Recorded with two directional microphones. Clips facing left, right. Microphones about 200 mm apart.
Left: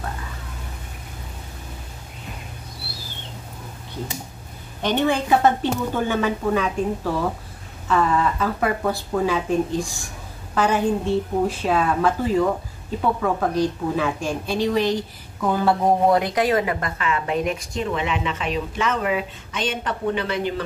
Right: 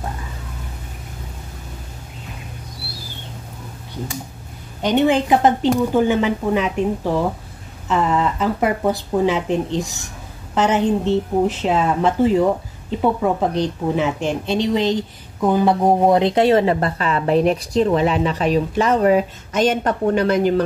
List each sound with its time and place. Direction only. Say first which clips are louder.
4.8 s speech: right 5 dB; 15° right (ahead or behind)
7.9 s speech: right 1 dB; 20° right (ahead or behind); by 20.6 s 45° right (ahead or behind)